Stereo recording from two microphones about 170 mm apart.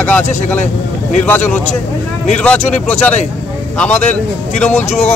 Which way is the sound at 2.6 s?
40° left (ahead or behind).